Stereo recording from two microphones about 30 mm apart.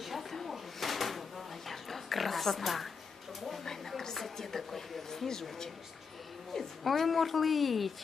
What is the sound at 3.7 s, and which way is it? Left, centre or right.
A woman's voice, centre.